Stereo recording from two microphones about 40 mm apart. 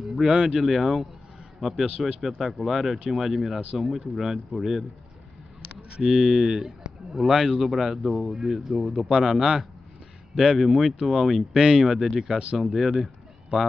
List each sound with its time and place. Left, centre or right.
0.3 s speech: right
0.6 s a man's voice: centre
1.9 s speech: right
2.3 s speech: centre
6.0 s speech: centre
7.6 s speech: centre
9.1 s speech: centre